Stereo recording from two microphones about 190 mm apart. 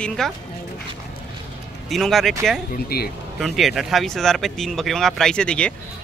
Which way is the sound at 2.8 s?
55° left (ahead or behind).